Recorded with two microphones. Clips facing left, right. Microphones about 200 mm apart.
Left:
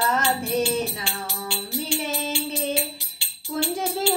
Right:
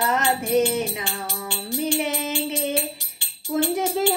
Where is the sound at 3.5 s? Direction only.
20° right (ahead or behind).